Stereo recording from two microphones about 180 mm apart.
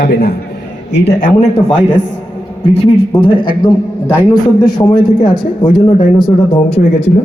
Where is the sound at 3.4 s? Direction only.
50° left (ahead or behind).